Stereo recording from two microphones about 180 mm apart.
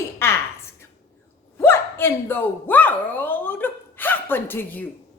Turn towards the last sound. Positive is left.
turn(degrees=10)  # may be behind; listen again after turning